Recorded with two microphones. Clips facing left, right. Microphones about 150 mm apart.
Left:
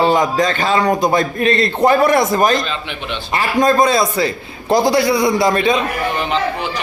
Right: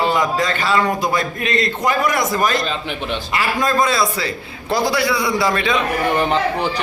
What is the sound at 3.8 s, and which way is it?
A man's voice, 20° left (ahead or behind).